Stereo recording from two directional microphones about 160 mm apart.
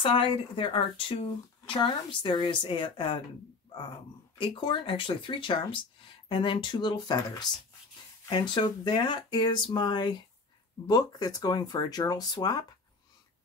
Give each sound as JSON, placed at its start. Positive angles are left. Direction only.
{"t": 0.0, "sound": "a woman's voice", "side_deg": 35}
{"t": 4.4, "sound": "a woman's voice", "side_deg": 30}